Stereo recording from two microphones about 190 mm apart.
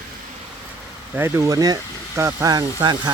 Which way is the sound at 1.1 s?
10° right (ahead or behind).